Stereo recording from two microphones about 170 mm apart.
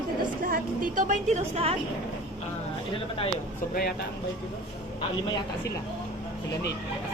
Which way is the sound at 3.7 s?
65° left (ahead or behind).